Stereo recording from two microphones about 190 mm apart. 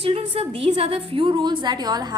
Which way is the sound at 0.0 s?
30° right (ahead or behind).